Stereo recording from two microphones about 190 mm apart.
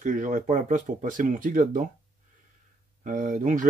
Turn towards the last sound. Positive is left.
turn(degrees=-40)  # may be behind; listen again after turning